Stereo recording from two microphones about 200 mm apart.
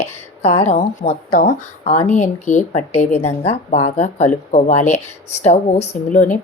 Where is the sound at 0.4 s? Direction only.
35° left (ahead or behind).